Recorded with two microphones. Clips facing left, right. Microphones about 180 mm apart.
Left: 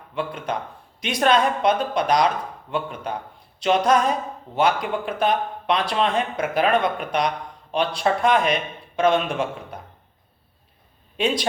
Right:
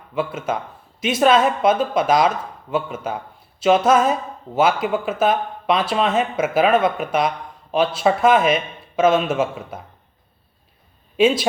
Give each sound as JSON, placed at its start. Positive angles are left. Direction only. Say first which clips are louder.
{"t": 0.1, "sound": "speech", "louder": "right 4 dB", "side_deg": -5}